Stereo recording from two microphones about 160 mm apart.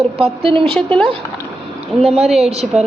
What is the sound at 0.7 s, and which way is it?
Speech, 5° left (ahead or behind).